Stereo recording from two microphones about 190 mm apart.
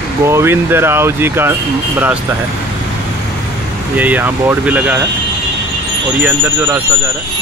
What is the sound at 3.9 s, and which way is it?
Speech, 10° right (ahead or behind).